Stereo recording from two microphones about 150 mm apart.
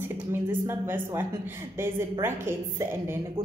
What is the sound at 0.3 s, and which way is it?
A woman's voice, 15° right (ahead or behind).